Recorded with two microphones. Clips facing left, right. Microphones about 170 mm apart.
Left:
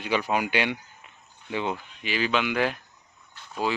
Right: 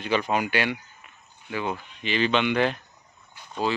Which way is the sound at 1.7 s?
5° left (ahead or behind).